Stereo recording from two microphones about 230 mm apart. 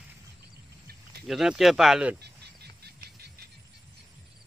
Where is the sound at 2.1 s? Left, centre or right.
Right.